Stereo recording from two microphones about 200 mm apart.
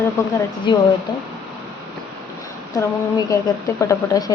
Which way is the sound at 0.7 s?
25° left (ahead or behind).